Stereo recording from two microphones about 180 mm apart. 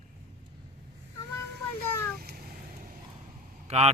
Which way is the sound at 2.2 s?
60° right (ahead or behind).